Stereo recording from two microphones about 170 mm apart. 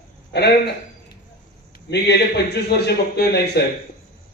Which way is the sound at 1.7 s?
80° left.